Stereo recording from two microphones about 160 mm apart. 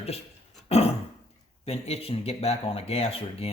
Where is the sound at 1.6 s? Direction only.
40° left (ahead or behind).